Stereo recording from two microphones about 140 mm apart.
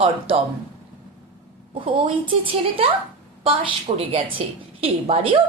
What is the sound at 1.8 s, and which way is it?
Speech, 40° right (ahead or behind).